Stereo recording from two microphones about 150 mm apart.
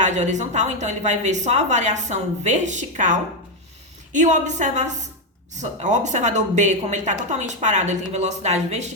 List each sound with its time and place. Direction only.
0.0 s speech: 50° right (ahead or behind)